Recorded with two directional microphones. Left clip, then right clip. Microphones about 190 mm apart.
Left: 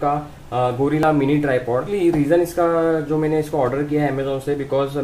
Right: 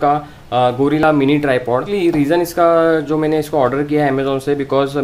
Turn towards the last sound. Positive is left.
turn(degrees=-40)  # may be behind; listen again after turning